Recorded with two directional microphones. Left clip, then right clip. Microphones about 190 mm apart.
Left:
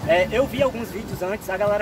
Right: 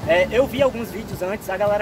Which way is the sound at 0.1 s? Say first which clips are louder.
Right 2 dB; 15° right (ahead or behind).